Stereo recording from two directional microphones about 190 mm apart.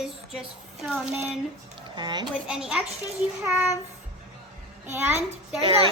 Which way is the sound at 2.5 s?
5° right (ahead or behind).